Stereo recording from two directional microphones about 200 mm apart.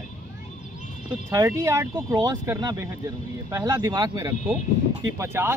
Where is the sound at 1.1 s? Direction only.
15° right (ahead or behind).